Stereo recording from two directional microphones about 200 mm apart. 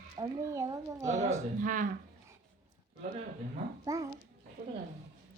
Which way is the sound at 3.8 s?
15° right (ahead or behind).